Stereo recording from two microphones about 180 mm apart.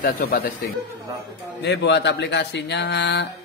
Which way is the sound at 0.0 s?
55° left (ahead or behind).